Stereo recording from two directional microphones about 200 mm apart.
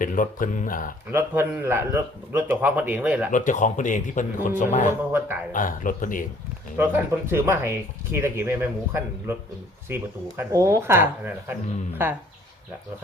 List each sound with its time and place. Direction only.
0.0 s speech: 45° left (ahead or behind)
1.1 s speech: 10° right (ahead or behind)
3.3 s speech: 40° left (ahead or behind)
6.7 s speech: 10° right (ahead or behind)